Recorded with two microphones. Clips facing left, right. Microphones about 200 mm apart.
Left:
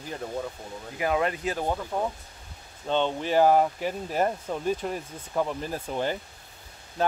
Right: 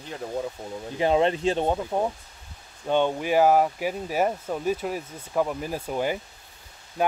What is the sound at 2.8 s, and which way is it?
Speech, 10° right (ahead or behind).